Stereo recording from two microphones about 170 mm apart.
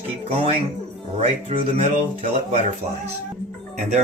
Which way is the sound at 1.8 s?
40° right (ahead or behind).